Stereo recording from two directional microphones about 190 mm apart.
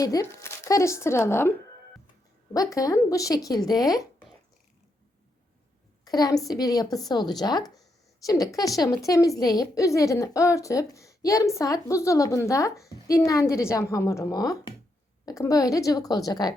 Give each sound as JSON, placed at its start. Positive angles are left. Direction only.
{"t": 0.0, "sound": "a woman's voice", "side_deg": 20}
{"t": 6.1, "sound": "a woman's voice", "side_deg": 20}
{"t": 12.7, "sound": "a woman's voice", "side_deg": 55}
{"t": 13.1, "sound": "a woman's voice", "side_deg": 15}